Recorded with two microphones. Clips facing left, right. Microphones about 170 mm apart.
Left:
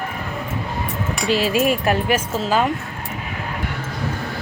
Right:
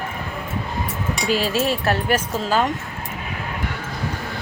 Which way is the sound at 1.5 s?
15° left (ahead or behind).